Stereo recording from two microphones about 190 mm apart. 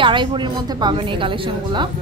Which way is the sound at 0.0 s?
25° right (ahead or behind).